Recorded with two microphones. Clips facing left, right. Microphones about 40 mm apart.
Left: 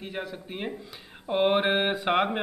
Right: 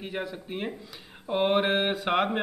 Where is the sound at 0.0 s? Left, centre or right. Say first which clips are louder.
Right 1 dB; centre.